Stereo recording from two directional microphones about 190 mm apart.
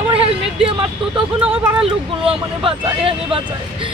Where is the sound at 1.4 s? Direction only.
5° right (ahead or behind).